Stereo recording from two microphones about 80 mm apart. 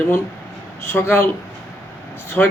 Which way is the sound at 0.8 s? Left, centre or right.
Left.